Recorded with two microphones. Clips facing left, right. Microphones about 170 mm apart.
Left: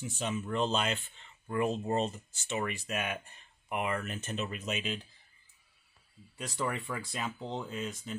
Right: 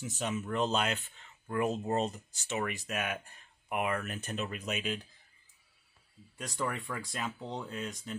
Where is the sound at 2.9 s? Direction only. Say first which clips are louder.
Even; centre (ahead or behind).